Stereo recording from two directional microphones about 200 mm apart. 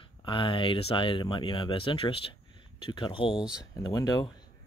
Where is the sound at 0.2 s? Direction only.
25° left (ahead or behind).